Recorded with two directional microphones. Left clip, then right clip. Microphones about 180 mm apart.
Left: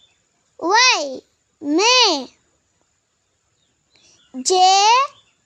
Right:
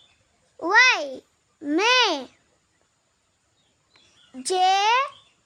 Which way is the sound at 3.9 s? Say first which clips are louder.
Left 8 dB; 30° left (ahead or behind).